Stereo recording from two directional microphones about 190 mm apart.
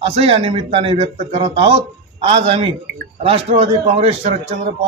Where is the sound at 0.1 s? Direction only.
30° right (ahead or behind).